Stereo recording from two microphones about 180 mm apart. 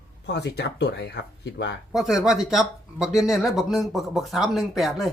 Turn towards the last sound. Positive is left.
turn(degrees=0)  # may be behind; listen again after turning